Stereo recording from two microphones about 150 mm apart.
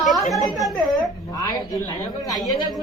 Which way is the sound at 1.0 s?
25° left (ahead or behind).